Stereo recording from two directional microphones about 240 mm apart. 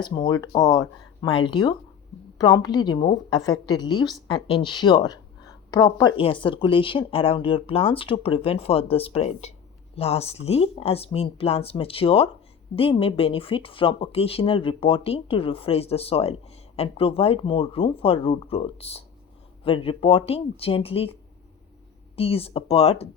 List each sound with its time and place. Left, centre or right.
0.0 s a woman's voice: centre